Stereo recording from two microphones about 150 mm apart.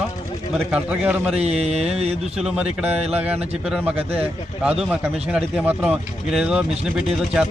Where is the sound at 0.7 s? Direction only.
10° right (ahead or behind).